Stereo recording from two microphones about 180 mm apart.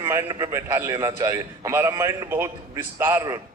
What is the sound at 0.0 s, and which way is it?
A man's voice, 15° right (ahead or behind).